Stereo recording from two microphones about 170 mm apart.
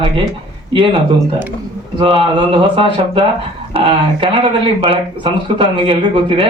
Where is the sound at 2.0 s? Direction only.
30° right (ahead or behind).